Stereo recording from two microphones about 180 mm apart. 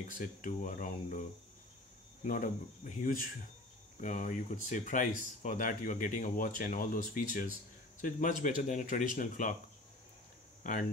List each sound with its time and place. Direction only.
0.0 s speech: 45° left (ahead or behind)
2.2 s speech: 45° left (ahead or behind)
10.6 s speech: 50° left (ahead or behind)